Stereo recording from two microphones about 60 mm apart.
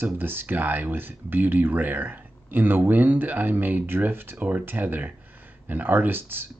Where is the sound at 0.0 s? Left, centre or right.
Right.